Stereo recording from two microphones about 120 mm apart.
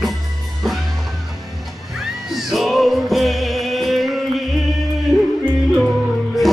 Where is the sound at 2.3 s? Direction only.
Centre (ahead or behind).